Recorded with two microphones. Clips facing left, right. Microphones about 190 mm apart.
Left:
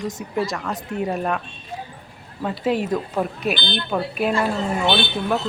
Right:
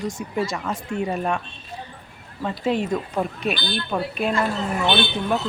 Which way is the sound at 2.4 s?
5° left (ahead or behind).